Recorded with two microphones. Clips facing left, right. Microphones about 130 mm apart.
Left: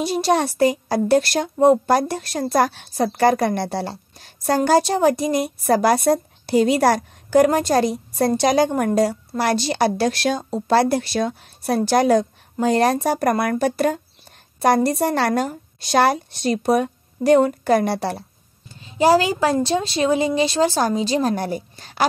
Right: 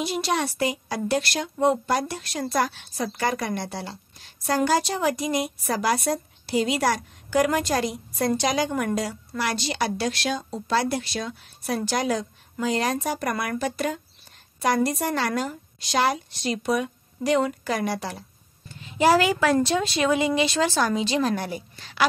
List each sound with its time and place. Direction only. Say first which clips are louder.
0.0 s a woman's voice: left 6 dB; 40° left (ahead or behind)
4.6 s a woman's voice: left 6 dB; 35° left (ahead or behind)
11.9 s a woman's voice: left 12 dB; 55° left (ahead or behind); by 15.1 s 35° left (ahead or behind)
15.1 s speech: left 6 dB; 55° left (ahead or behind)
16.1 s a woman's voice: left 6 dB; 40° left (ahead or behind)
18.8 s speech: left 3 dB; 35° left (ahead or behind)